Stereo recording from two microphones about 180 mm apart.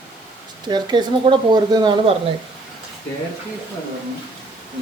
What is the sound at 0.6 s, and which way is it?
Speech, 25° right (ahead or behind).